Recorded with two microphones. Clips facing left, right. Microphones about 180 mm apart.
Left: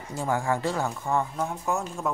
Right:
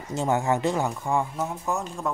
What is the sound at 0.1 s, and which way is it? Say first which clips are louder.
Speech: right 3 dB; 25° right (ahead or behind).